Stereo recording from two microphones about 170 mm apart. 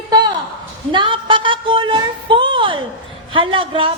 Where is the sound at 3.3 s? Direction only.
30° right (ahead or behind).